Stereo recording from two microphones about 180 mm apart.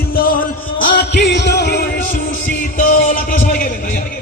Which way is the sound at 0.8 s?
65° left (ahead or behind).